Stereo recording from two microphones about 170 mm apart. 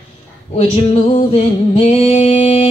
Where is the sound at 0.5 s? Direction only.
35° left (ahead or behind).